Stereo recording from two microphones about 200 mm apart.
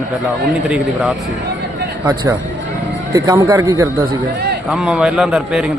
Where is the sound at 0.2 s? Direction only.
Centre (ahead or behind).